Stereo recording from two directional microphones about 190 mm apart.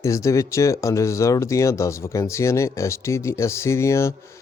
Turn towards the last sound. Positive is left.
turn(degrees=15)  # may be behind; listen again after turning